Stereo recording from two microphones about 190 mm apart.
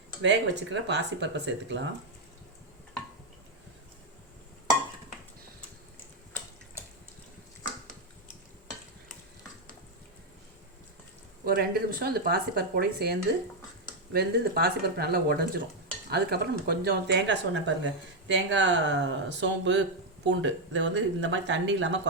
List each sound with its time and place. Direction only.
0.2 s speech: 70° right (ahead or behind)
11.4 s speech: 55° right (ahead or behind); by 22.0 s 70° right (ahead or behind)